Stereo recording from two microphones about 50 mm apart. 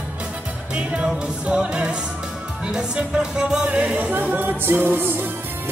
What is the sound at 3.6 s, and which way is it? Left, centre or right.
Music, right.